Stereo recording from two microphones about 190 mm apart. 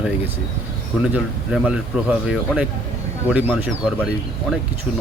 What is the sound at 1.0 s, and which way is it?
Speech, 5° right (ahead or behind).